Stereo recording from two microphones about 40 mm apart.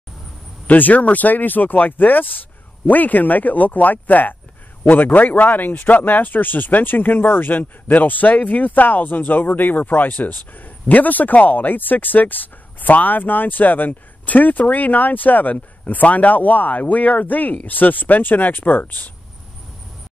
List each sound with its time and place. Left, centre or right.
0.7 s speech: left